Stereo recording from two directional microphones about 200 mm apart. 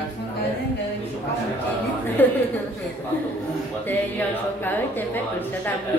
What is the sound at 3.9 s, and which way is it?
Music, 10° left (ahead or behind).